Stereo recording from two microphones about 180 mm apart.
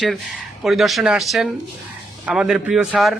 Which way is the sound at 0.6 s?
Centre (ahead or behind).